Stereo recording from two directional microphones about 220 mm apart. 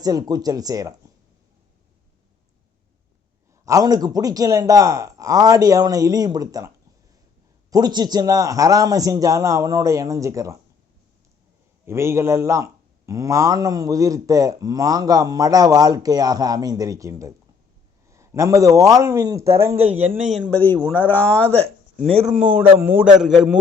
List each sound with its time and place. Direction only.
0.0 s speech: 15° right (ahead or behind)
3.7 s speech: 15° right (ahead or behind)
7.7 s speech: 20° right (ahead or behind)
11.9 s speech: 10° right (ahead or behind)
20.3 s speech: centre (ahead or behind)
22.4 s speech: 5° right (ahead or behind)